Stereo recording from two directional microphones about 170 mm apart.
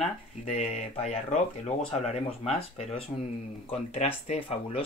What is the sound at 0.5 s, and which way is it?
Speech, 40° left (ahead or behind).